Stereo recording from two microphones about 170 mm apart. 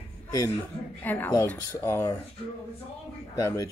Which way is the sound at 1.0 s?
10° left (ahead or behind).